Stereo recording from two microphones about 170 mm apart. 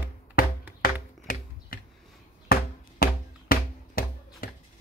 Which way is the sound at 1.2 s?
60° left (ahead or behind).